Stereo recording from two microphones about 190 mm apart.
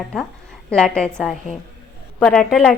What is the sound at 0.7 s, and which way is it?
A woman's voice, 5° left (ahead or behind).